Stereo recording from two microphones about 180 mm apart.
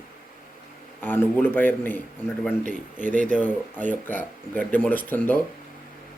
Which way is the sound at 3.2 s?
10° left (ahead or behind).